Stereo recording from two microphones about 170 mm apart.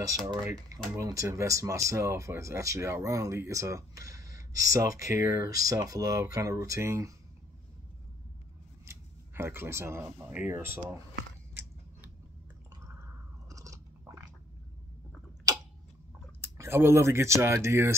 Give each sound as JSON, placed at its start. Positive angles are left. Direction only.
{"t": 0.3, "sound": "speech", "side_deg": -20}
{"t": 8.8, "sound": "a sound", "side_deg": -15}
{"t": 10.1, "sound": "speech", "side_deg": -10}
{"t": 12.8, "sound": "chewing", "side_deg": -20}
{"t": 16.3, "sound": "speech", "side_deg": -15}